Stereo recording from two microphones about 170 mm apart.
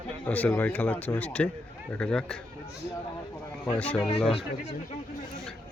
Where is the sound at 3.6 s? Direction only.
10° left (ahead or behind).